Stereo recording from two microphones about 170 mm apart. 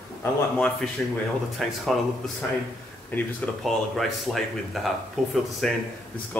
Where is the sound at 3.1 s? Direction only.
10° left (ahead or behind).